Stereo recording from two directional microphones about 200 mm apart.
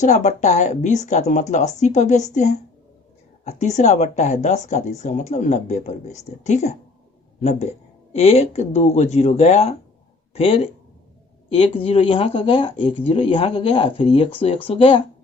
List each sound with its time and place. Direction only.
0.0 s speech: 35° left (ahead or behind)